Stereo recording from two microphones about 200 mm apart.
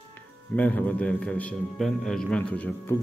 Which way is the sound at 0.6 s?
5° left (ahead or behind).